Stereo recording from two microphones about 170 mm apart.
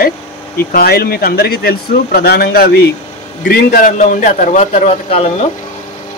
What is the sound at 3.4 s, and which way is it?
A man's voice, 55° left (ahead or behind).